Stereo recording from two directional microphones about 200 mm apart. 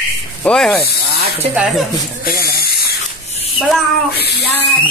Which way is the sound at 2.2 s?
50° left (ahead or behind).